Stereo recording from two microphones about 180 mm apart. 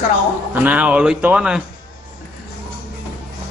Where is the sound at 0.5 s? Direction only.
10° right (ahead or behind).